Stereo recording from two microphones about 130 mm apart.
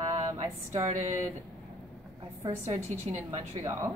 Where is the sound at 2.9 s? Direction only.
60° right (ahead or behind).